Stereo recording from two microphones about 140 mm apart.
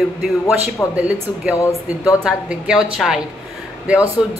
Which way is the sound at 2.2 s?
5° right (ahead or behind).